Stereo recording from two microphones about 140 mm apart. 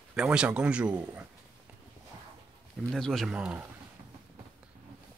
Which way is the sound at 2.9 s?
5° left (ahead or behind).